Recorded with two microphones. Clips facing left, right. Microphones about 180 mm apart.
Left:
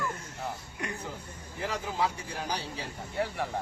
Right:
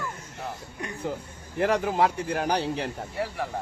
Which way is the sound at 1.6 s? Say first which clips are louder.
Right 8 dB; 65° right (ahead or behind).